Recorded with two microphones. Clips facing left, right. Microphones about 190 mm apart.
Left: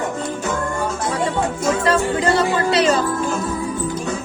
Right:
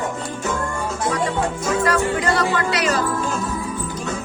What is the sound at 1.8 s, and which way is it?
Music, 30° left (ahead or behind).